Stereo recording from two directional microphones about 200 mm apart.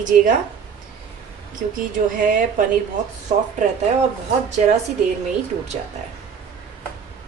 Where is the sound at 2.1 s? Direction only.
40° right (ahead or behind).